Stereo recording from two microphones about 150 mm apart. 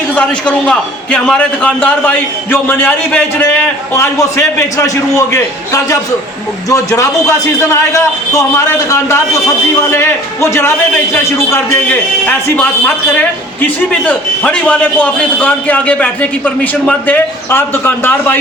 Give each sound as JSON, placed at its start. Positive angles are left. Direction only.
{"t": 0.1, "sound": "a man's voice", "side_deg": 10}
{"t": 10.5, "sound": "a man's voice", "side_deg": 15}